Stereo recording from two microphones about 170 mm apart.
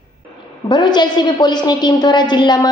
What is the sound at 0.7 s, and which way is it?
A woman's voice, 25° left (ahead or behind).